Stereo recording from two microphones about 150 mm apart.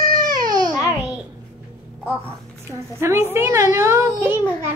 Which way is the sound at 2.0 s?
15° right (ahead or behind).